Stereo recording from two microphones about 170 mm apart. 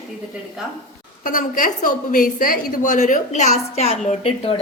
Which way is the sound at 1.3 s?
50° left (ahead or behind).